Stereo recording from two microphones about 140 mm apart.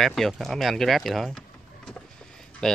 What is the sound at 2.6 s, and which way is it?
Speech, 5° left (ahead or behind).